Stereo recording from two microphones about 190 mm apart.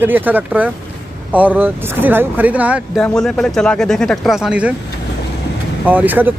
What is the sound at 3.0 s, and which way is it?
Speech, 5° left (ahead or behind).